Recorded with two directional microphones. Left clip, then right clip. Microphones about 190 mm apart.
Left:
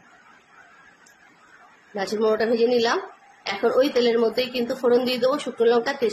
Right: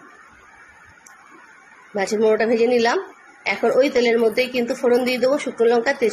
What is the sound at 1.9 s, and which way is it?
A woman's voice, 10° right (ahead or behind).